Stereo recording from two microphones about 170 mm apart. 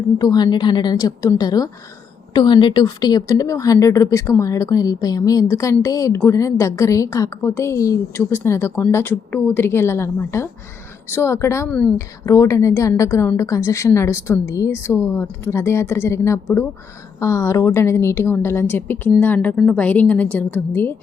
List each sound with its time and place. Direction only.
0.2 s a woman's voice: 25° left (ahead or behind)